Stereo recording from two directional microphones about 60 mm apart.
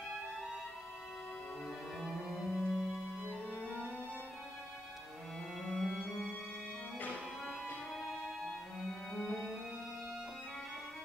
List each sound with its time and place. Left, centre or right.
2.0 s music: centre
3.4 s music: centre
5.7 s music: centre
7.9 s music: centre